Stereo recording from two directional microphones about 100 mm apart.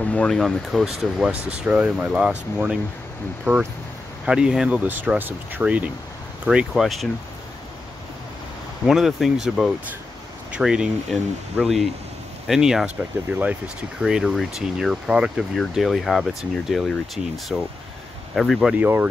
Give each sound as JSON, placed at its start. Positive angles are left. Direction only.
{"t": 0.0, "sound": "speech", "side_deg": 10}
{"t": 0.4, "sound": "speech", "side_deg": 0}
{"t": 6.7, "sound": "speech", "side_deg": 0}
{"t": 8.8, "sound": "speech", "side_deg": -5}
{"t": 14.0, "sound": "speech", "side_deg": 0}
{"t": 18.8, "sound": "speech", "side_deg": -20}